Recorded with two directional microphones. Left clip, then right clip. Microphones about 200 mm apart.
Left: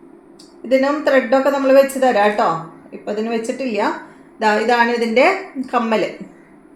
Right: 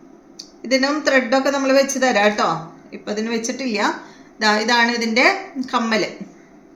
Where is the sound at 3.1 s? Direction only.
35° right (ahead or behind).